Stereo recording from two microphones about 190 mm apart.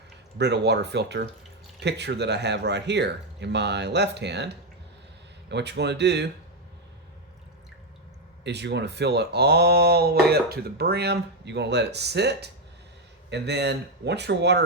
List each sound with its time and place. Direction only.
0.3 s speech: 60° right (ahead or behind)
8.4 s speech: 65° right (ahead or behind)